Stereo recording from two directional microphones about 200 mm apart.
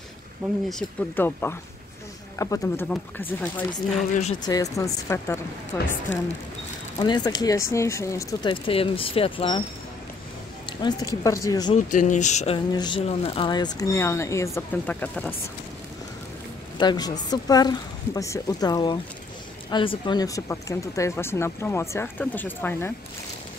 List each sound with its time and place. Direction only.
0.7 s speech: 5° left (ahead or behind)
4.1 s speech: 35° left (ahead or behind)
4.4 s speech: 20° left (ahead or behind)
7.0 s speech: 20° left (ahead or behind)
10.8 s speech: 20° left (ahead or behind)
11.7 s speech: 40° left (ahead or behind)
12.7 s speech: 25° left (ahead or behind)
16.7 s speech: 20° left (ahead or behind)